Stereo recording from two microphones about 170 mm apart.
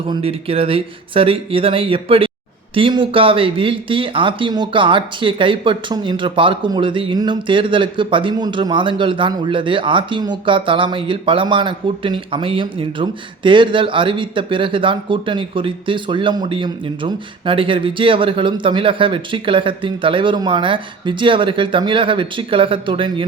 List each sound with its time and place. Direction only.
0.1 s speech: 35° right (ahead or behind)